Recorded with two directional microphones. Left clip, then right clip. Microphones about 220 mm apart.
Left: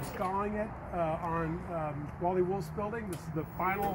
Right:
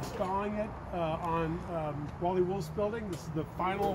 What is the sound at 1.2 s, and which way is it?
Speech, 15° right (ahead or behind).